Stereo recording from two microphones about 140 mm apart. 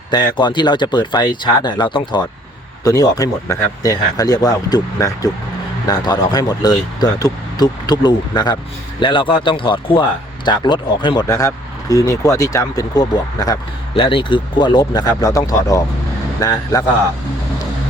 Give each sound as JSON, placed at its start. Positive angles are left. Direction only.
{"t": 0.1, "sound": "speech", "side_deg": 30}
{"t": 13.9, "sound": "speech", "side_deg": 40}